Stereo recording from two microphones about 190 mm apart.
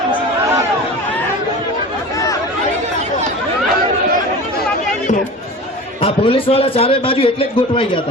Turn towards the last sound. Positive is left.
turn(degrees=30)  # may be behind; listen again after turning